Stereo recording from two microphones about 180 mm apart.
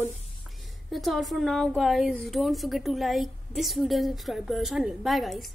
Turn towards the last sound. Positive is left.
turn(degrees=0)  # may be behind; listen again after turning